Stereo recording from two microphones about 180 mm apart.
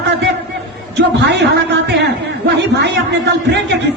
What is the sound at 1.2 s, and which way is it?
A man's voice, 70° right (ahead or behind).